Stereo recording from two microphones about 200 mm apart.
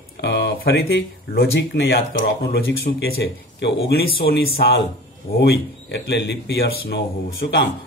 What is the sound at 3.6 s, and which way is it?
Speech, 55° left (ahead or behind).